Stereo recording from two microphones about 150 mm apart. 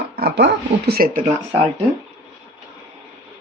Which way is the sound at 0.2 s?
90° right.